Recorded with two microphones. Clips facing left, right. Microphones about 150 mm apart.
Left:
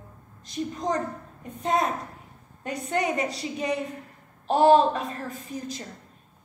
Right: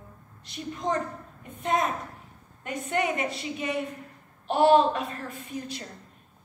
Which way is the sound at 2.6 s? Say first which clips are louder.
Left 1 dB; 35° left (ahead or behind).